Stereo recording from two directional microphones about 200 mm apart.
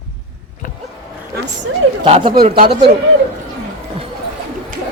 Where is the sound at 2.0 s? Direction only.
25° right (ahead or behind).